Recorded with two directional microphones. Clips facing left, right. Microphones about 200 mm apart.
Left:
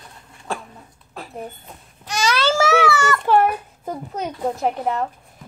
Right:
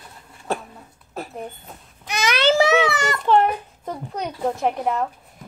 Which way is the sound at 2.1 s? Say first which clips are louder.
Right 1 dB; 15° right (ahead or behind).